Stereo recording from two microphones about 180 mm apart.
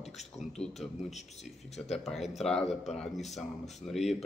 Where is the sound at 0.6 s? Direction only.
Centre (ahead or behind).